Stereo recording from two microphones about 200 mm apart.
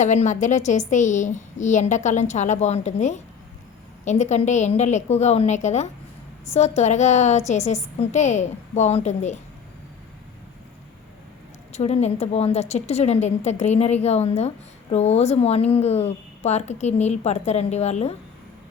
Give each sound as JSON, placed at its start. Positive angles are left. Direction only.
{"t": 0.0, "sound": "a woman's voice", "side_deg": 35}
{"t": 11.7, "sound": "a woman's voice", "side_deg": 35}